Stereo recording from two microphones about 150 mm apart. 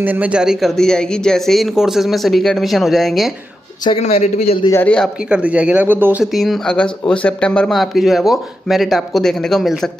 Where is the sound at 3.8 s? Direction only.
45° left (ahead or behind).